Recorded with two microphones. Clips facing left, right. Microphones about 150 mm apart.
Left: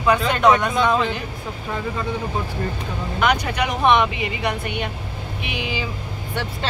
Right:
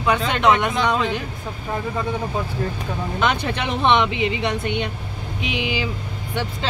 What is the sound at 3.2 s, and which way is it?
Speech, 25° right (ahead or behind).